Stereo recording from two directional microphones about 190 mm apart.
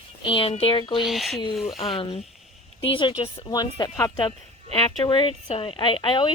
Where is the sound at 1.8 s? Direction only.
30° left (ahead or behind).